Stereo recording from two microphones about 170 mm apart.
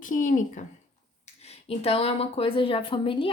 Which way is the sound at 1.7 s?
35° left (ahead or behind).